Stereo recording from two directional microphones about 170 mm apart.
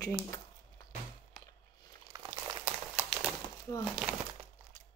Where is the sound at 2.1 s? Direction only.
25° right (ahead or behind).